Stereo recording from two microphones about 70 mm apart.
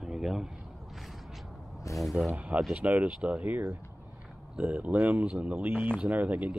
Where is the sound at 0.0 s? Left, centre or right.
Centre.